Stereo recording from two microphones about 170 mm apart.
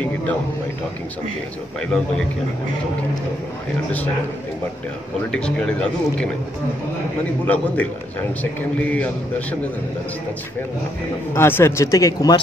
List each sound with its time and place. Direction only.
0.0 s a sound: 10° left (ahead or behind)
5.3 s speech: 5° left (ahead or behind)
7.4 s a man's voice: 10° left (ahead or behind)
8.9 s a man's voice: 10° left (ahead or behind)
11.3 s speech: 15° left (ahead or behind)